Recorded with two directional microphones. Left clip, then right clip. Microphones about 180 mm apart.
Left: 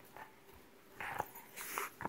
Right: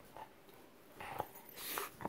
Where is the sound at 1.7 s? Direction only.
15° right (ahead or behind).